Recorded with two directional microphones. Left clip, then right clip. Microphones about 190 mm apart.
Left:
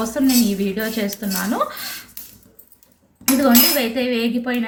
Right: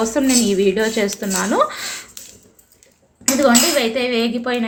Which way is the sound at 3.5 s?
35° right (ahead or behind).